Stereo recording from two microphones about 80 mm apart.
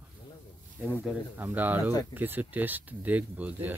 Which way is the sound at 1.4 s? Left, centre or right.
Right.